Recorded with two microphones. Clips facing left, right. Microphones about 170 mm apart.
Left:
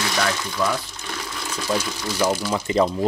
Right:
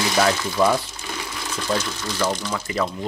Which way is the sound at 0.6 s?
30° right (ahead or behind).